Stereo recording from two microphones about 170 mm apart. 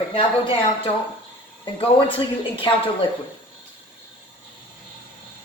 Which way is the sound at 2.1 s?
30° left (ahead or behind).